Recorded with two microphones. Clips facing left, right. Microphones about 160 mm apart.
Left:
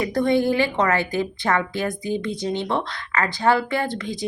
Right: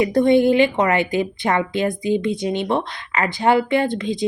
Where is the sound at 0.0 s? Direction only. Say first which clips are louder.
Right 5 dB; 20° right (ahead or behind).